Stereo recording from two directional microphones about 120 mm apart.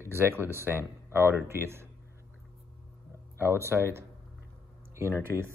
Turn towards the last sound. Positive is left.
turn(degrees=-20)  # may be behind; listen again after turning